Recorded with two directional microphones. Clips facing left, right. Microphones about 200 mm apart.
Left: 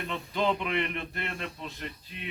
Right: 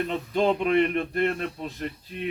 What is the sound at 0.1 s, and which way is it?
Speech, 45° right (ahead or behind).